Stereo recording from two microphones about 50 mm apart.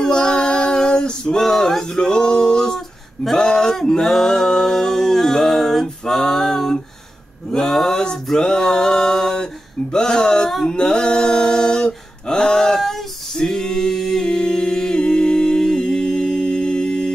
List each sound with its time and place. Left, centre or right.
0.0 s female singing: centre
3.3 s male singing: centre
7.5 s a capella: centre
10.6 s a sound: centre